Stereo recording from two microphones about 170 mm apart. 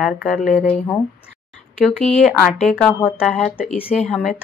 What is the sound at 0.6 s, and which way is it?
Speech, 10° left (ahead or behind).